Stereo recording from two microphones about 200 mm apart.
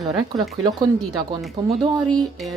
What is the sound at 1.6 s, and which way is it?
Speech, 20° right (ahead or behind).